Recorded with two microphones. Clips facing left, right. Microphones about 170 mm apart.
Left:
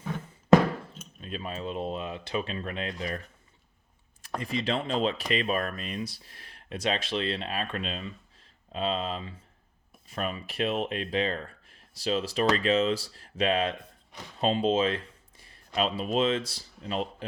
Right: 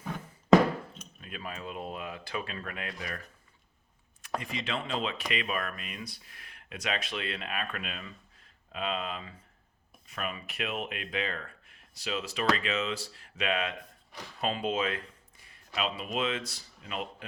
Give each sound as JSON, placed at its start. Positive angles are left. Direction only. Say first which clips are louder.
{"t": 1.2, "sound": "speech", "louder": "left 5 dB", "side_deg": 25}
{"t": 4.4, "sound": "speech", "louder": "left 6 dB", "side_deg": 35}